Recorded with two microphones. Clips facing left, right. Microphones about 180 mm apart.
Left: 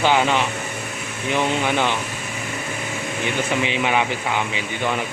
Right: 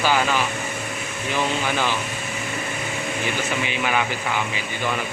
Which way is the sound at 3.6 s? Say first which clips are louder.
Left 3 dB; 25° left (ahead or behind).